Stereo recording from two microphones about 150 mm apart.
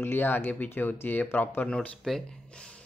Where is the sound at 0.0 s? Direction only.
15° left (ahead or behind).